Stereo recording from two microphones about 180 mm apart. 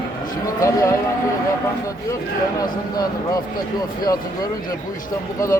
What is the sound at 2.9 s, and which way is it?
Speech, 20° left (ahead or behind).